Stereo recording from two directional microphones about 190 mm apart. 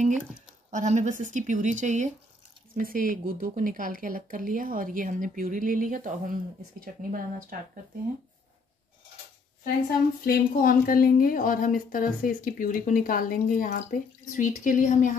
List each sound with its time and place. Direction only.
0.7 s speech: 40° right (ahead or behind)
10.2 s a woman's voice: 50° left (ahead or behind)